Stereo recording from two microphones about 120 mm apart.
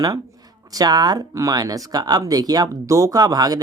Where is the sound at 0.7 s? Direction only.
30° right (ahead or behind).